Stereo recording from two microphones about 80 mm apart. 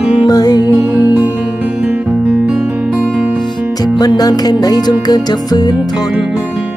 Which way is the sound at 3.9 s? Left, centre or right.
Left.